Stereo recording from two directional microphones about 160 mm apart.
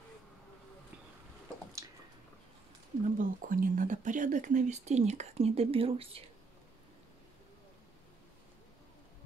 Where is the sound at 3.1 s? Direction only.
60° right (ahead or behind); by 6.2 s 35° right (ahead or behind).